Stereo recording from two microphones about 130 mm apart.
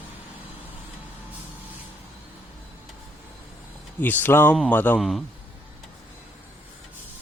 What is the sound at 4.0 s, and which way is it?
Speech, 15° left (ahead or behind).